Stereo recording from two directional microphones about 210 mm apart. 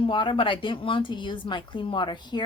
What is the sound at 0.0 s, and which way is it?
Speech, 25° left (ahead or behind).